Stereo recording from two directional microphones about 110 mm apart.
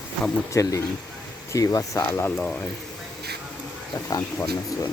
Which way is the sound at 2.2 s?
10° left (ahead or behind).